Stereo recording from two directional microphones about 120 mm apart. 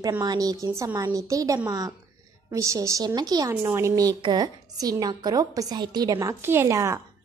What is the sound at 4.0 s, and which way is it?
A woman's voice, 35° right (ahead or behind).